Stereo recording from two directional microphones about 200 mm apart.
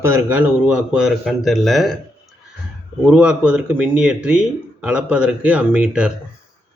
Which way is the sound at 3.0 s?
5° right (ahead or behind).